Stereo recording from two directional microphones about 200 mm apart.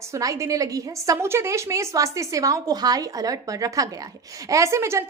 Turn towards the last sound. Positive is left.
turn(degrees=-15)  # may be behind; listen again after turning